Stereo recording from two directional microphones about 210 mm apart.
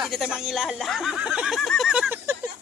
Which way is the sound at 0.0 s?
Centre (ahead or behind).